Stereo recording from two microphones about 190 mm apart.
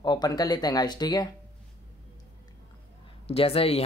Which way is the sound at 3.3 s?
30° left (ahead or behind).